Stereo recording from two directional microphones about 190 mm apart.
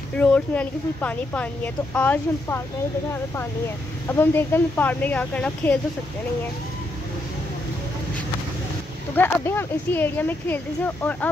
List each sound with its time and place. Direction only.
0.2 s speech: 10° left (ahead or behind)
4.1 s speech: 10° left (ahead or behind)
9.1 s speech: 10° left (ahead or behind)